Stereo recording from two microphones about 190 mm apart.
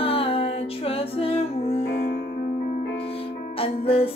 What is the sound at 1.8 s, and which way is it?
Music, 55° left (ahead or behind).